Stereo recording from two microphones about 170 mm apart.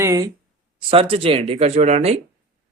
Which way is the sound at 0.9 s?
30° right (ahead or behind).